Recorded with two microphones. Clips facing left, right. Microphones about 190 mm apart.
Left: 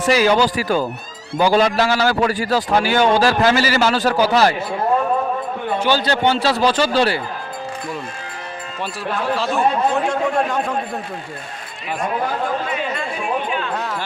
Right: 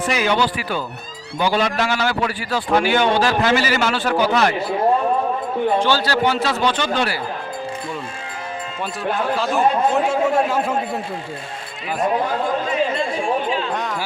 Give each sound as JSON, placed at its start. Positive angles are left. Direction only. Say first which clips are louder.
{"t": 0.1, "sound": "a man's voice", "louder": "left 6 dB", "side_deg": 35}
{"t": 5.8, "sound": "a man's voice", "louder": "left 1 dB", "side_deg": 15}
{"t": 9.3, "sound": "speech", "louder": "even", "side_deg": 0}
{"t": 13.0, "sound": "chatter", "louder": "right 2 dB", "side_deg": -25}